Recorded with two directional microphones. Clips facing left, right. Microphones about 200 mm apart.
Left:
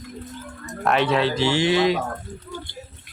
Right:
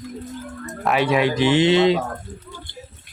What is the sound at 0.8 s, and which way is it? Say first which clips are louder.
Speech: right 1 dB; 10° right (ahead or behind).